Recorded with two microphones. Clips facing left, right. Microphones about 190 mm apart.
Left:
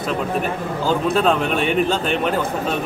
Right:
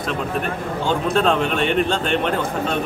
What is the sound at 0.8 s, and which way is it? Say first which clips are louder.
Speech: left 1 dB; 5° left (ahead or behind).